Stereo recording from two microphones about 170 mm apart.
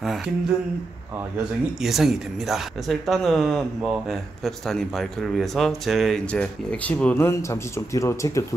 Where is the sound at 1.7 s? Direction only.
Centre (ahead or behind).